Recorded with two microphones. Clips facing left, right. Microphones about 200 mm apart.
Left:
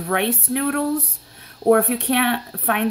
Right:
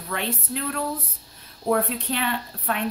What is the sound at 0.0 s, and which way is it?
Speech, 70° left (ahead or behind).